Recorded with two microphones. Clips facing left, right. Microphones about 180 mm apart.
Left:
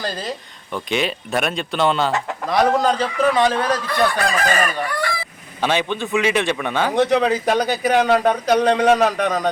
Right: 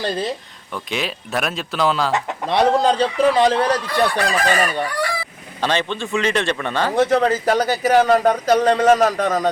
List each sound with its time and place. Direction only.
0.7 s a man's voice: centre (ahead or behind)
2.5 s a man's voice: 25° right (ahead or behind)
4.3 s chicken: 35° right (ahead or behind)
5.6 s speech: 10° left (ahead or behind)
6.9 s a man's voice: centre (ahead or behind)